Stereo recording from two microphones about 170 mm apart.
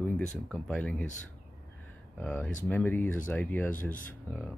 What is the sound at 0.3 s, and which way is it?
Speech, 5° left (ahead or behind).